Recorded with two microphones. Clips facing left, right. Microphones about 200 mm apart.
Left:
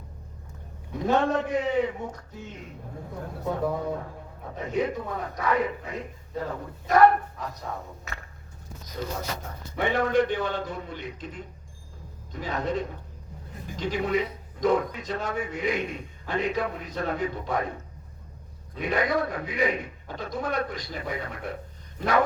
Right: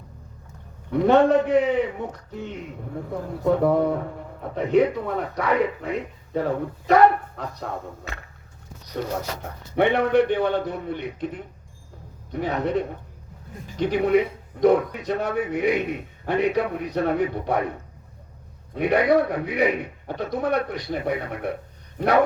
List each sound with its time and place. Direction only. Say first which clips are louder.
0.9 s speech: right 8 dB; 65° right (ahead or behind)
18.7 s speech: right 7 dB; 65° right (ahead or behind)
21.9 s a sound: right 5 dB; 60° right (ahead or behind)